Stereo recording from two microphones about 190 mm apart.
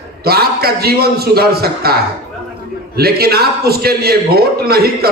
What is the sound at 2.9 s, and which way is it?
A man's voice, 55° right (ahead or behind).